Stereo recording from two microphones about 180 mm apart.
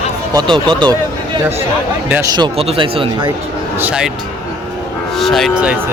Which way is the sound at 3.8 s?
5° right (ahead or behind).